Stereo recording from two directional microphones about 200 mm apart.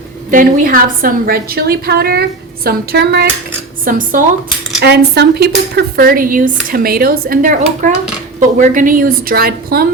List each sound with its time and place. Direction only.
0.3 s speech: 40° right (ahead or behind)
3.8 s speech: 45° right (ahead or behind)
4.8 s speech: 55° right (ahead or behind)